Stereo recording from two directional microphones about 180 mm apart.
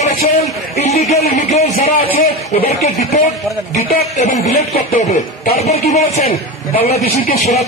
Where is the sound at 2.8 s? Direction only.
35° left (ahead or behind).